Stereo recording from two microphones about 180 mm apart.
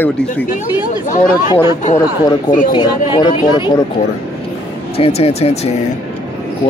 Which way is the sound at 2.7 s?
25° left (ahead or behind).